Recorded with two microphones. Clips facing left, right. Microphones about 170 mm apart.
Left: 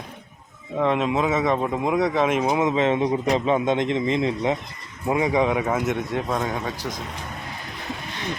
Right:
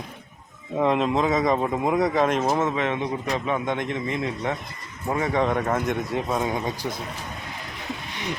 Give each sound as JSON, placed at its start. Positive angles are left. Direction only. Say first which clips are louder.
{"t": 0.8, "sound": "a man's voice", "louder": "even", "side_deg": 0}
{"t": 2.7, "sound": "speech", "louder": "left 5 dB", "side_deg": 30}
{"t": 5.0, "sound": "a man's voice", "louder": "left 3 dB", "side_deg": 10}